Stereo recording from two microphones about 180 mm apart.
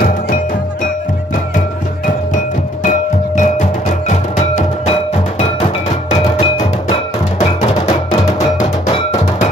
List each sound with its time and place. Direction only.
2.3 s music: 45° left (ahead or behind)